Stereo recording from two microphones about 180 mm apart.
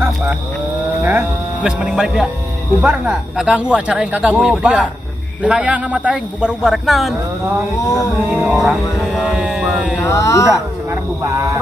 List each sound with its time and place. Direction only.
1.0 s speech: 10° right (ahead or behind)
7.8 s music: 20° left (ahead or behind)
8.3 s speech: 5° right (ahead or behind)
10.0 s speech: 15° left (ahead or behind)
11.2 s frog: 15° right (ahead or behind)